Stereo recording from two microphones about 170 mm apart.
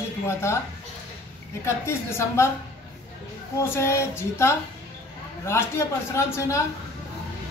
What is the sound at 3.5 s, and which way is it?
A man's voice, 15° left (ahead or behind).